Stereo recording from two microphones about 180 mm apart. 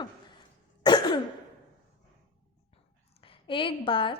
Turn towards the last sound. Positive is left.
turn(degrees=30)  # may be behind; listen again after turning